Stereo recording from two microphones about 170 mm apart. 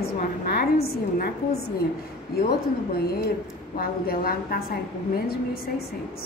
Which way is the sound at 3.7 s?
60° left (ahead or behind).